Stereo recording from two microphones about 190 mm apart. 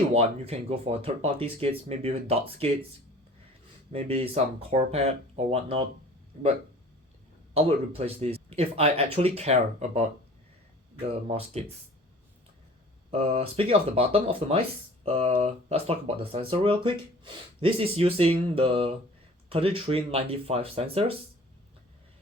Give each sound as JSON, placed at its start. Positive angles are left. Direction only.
{"t": 0.1, "sound": "speech", "side_deg": -30}
{"t": 3.9, "sound": "speech", "side_deg": -30}
{"t": 7.5, "sound": "speech", "side_deg": -30}
{"t": 11.3, "sound": "speech", "side_deg": -30}
{"t": 13.1, "sound": "speech", "side_deg": -35}